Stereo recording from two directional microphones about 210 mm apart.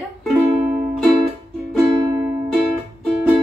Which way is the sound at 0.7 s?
45° right (ahead or behind).